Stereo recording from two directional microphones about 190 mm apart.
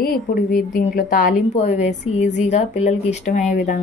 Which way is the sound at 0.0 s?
50° left (ahead or behind).